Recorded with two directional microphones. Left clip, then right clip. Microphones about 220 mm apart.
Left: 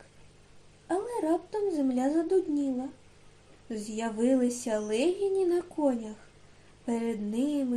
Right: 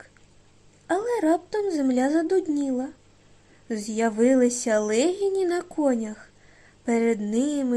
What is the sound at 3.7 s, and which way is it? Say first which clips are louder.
Speech: right 9 dB; 45° right (ahead or behind).